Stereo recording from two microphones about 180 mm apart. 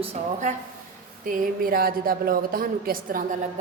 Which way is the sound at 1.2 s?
50° right (ahead or behind).